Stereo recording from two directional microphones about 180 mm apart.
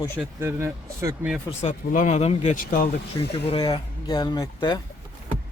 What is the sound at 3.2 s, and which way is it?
Speech, 20° left (ahead or behind).